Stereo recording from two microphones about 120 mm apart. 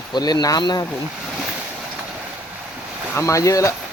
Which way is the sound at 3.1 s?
25° left (ahead or behind).